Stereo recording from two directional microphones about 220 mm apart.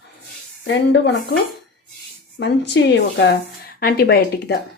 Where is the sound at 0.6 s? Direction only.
55° left (ahead or behind).